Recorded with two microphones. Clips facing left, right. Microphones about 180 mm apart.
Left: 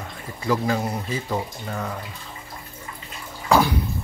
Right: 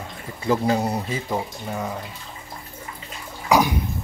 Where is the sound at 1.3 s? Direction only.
10° right (ahead or behind).